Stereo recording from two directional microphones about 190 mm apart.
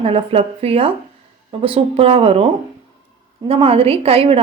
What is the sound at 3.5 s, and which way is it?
Speech, 30° right (ahead or behind).